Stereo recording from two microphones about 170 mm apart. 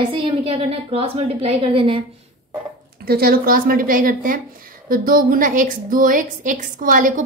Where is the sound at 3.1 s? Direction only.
60° right (ahead or behind).